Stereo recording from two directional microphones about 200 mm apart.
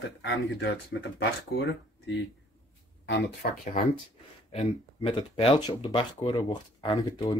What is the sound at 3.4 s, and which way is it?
Speech, 45° left (ahead or behind).